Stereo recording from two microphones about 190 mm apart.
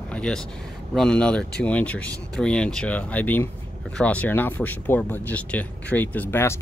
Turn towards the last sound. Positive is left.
turn(degrees=10)  # may be behind; listen again after turning